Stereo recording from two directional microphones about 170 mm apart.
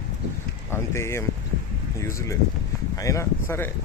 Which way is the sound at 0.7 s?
15° left (ahead or behind).